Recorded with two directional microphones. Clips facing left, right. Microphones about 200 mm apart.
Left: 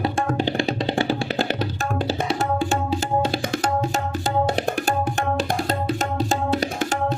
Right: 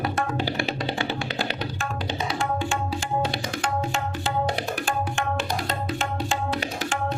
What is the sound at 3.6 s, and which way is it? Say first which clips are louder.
Tabla: left 4 dB; 40° left (ahead or behind).